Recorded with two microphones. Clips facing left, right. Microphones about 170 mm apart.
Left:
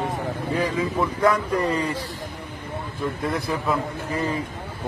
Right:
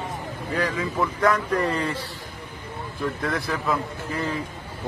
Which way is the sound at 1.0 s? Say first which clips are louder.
Left 1 dB; 15° left (ahead or behind).